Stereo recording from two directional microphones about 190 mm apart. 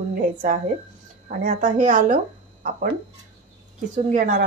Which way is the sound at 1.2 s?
45° right (ahead or behind).